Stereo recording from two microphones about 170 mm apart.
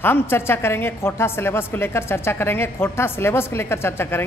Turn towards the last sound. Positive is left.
turn(degrees=15)  # may be behind; listen again after turning